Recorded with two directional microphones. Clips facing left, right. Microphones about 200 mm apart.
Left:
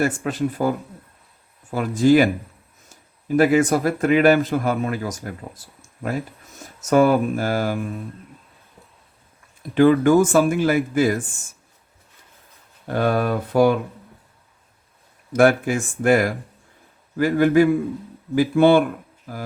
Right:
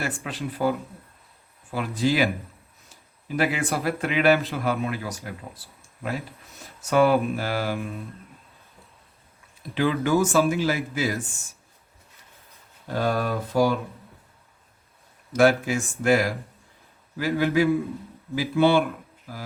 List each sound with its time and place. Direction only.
0.2 s speech: 45° left (ahead or behind)
1.7 s speech: 45° left (ahead or behind)
9.7 s speech: 50° left (ahead or behind)
12.9 s speech: 60° left (ahead or behind)
15.3 s speech: 50° left (ahead or behind)